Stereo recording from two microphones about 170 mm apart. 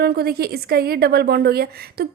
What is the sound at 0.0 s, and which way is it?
A woman's voice, 70° right (ahead or behind).